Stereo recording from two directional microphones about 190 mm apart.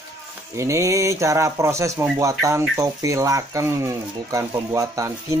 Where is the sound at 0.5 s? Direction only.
15° right (ahead or behind).